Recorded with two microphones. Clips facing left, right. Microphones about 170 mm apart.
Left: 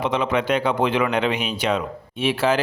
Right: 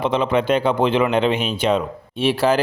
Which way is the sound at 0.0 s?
30° right (ahead or behind).